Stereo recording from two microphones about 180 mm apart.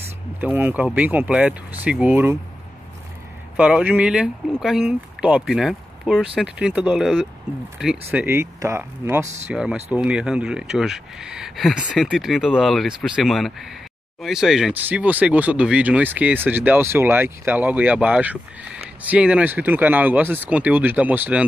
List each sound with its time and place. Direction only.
0.4 s speech: 10° right (ahead or behind)
3.5 s speech: 5° right (ahead or behind)
9.2 s speech: 40° right (ahead or behind)
9.5 s speech: 5° right (ahead or behind)